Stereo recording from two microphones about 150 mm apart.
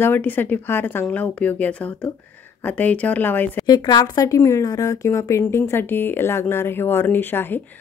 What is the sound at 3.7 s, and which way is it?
A woman's voice, 25° left (ahead or behind).